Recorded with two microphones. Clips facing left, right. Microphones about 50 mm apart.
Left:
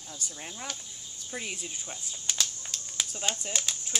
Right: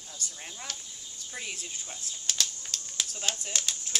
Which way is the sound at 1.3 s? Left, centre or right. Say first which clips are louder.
Left 2 dB; centre.